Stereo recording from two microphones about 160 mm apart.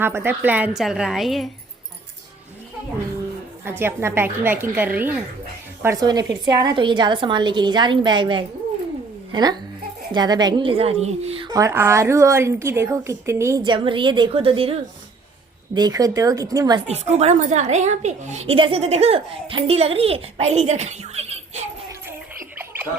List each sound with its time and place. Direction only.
0.0 s a woman's voice: 15° right (ahead or behind)
3.6 s a woman's voice: 15° right (ahead or behind)
5.8 s a woman's voice: 20° right (ahead or behind); by 11.4 s 40° right (ahead or behind)
11.4 s a woman's voice: 20° right (ahead or behind)
13.6 s a woman's voice: 30° right (ahead or behind)
15.7 s a woman's voice: 25° right (ahead or behind)
16.8 s a woman's voice: 40° right (ahead or behind)